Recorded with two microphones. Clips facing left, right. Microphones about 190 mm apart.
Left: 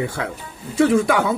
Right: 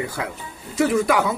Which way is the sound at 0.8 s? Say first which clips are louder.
Left 2 dB; 30° left (ahead or behind).